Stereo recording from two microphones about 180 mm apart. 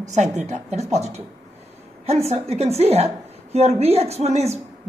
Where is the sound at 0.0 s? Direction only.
40° right (ahead or behind).